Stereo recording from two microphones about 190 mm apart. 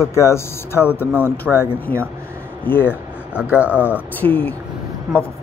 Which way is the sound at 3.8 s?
10° left (ahead or behind).